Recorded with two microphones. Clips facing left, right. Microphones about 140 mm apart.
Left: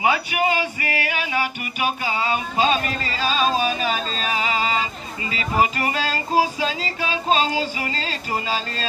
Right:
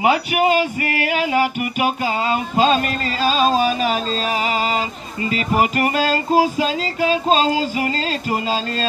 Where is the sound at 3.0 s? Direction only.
40° right (ahead or behind).